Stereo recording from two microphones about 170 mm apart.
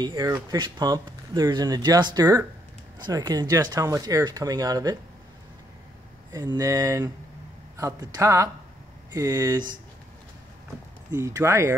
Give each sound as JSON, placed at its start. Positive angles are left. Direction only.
{"t": 0.0, "sound": "speech", "side_deg": -25}
{"t": 6.3, "sound": "speech", "side_deg": -20}
{"t": 11.1, "sound": "speech", "side_deg": -15}